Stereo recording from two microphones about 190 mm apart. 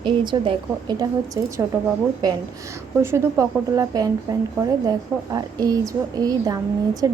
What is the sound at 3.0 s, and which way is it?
A woman's voice, 15° right (ahead or behind).